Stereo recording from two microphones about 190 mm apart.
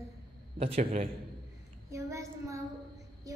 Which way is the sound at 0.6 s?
30° right (ahead or behind).